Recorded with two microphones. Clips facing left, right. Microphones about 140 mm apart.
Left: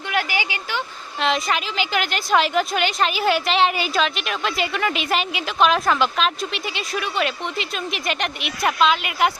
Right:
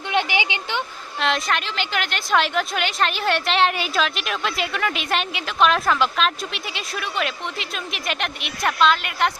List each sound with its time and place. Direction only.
0.1 s speech: 20° right (ahead or behind)
1.2 s a woman's voice: centre (ahead or behind)